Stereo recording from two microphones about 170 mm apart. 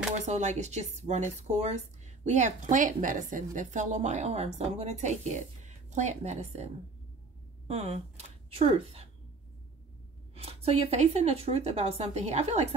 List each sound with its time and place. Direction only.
0.1 s a woman's voice: 45° right (ahead or behind)
10.3 s a woman's voice: 35° right (ahead or behind)